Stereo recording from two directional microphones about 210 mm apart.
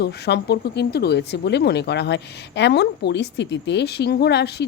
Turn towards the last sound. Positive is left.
turn(degrees=50)  # may be behind; listen again after turning